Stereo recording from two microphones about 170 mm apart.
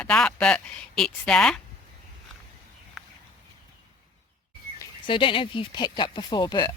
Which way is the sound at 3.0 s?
Centre (ahead or behind).